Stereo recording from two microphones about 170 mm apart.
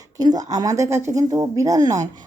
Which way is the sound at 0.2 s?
20° right (ahead or behind).